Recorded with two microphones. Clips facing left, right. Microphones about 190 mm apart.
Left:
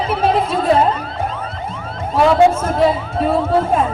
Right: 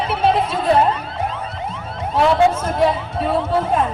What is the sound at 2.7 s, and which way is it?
Speech, 5° left (ahead or behind).